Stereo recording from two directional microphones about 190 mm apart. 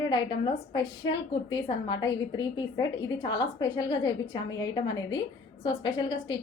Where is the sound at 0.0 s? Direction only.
25° left (ahead or behind).